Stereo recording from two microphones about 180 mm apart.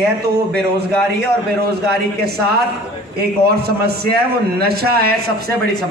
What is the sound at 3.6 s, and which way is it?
A man's voice, 60° right (ahead or behind).